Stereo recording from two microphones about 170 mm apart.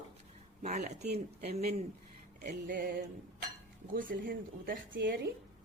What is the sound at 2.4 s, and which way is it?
Speech, 55° right (ahead or behind).